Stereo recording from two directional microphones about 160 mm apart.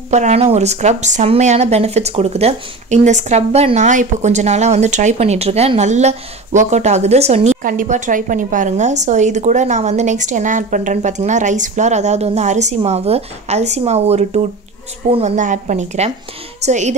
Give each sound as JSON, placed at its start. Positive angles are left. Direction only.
{"t": 0.1, "sound": "speech", "side_deg": -45}
{"t": 7.6, "sound": "speech", "side_deg": -55}